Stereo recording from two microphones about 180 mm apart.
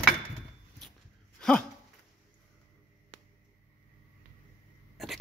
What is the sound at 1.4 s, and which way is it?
Dog, 5° left (ahead or behind).